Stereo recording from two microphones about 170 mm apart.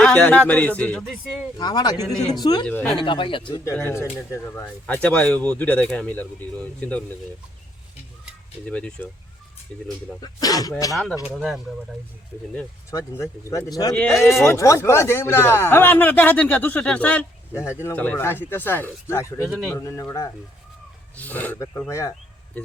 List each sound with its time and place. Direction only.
0.0 s speech: 10° left (ahead or behind)
1.5 s speech: 25° left (ahead or behind)
2.6 s speech: 5° left (ahead or behind)
2.9 s speech: 30° left (ahead or behind)
3.6 s speech: 15° left (ahead or behind)
8.7 s speech: 5° left (ahead or behind)
10.2 s speech: 20° left (ahead or behind)
11.2 s speech: centre (ahead or behind)
12.9 s speech: 20° left (ahead or behind)